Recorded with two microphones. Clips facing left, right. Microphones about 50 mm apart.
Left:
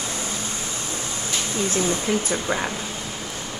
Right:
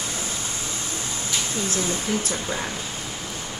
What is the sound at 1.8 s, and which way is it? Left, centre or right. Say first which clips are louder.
Speech: left 3 dB; centre.